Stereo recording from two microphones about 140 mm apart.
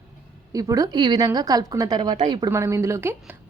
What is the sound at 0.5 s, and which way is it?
A woman's voice, 25° right (ahead or behind).